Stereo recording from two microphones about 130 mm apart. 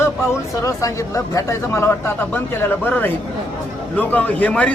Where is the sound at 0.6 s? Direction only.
25° left (ahead or behind).